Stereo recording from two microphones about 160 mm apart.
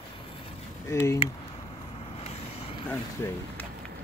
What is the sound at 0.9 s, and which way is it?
Speech, 15° left (ahead or behind).